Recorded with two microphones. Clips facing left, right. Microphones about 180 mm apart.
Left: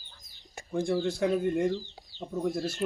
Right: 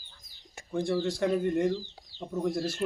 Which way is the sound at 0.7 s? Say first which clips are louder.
Left 1 dB; 10° left (ahead or behind).